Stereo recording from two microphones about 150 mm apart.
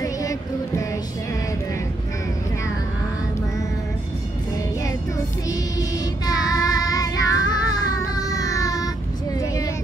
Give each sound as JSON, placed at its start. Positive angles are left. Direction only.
{"t": 0.0, "sound": "music", "side_deg": 20}
{"t": 5.5, "sound": "child singing", "side_deg": 25}